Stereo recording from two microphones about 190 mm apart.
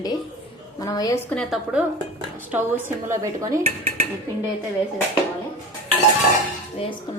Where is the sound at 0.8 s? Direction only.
20° left (ahead or behind).